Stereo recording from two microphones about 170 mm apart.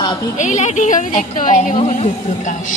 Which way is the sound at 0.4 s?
45° left (ahead or behind).